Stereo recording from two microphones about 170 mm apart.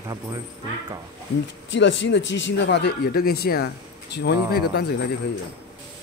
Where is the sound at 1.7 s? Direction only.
90° left.